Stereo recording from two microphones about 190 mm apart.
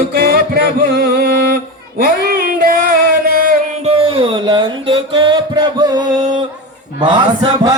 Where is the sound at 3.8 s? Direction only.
30° right (ahead or behind).